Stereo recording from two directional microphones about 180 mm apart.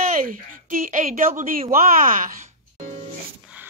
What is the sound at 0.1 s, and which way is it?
A woman's voice, 50° right (ahead or behind).